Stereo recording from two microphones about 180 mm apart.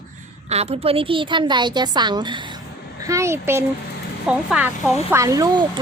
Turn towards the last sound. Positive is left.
turn(degrees=-25)  # may be behind; listen again after turning